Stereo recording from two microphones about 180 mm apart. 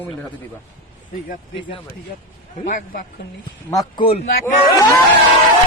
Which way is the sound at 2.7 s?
50° left (ahead or behind).